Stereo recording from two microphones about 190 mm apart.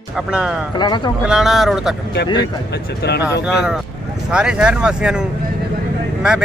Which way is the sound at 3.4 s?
5° right (ahead or behind).